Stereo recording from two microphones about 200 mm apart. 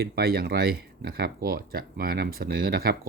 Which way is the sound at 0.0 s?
50° right (ahead or behind).